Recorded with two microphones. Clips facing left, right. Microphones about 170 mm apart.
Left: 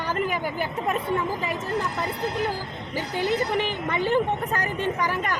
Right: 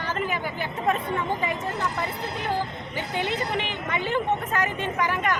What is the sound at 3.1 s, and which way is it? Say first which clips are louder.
Speech: left 3 dB; 20° right (ahead or behind).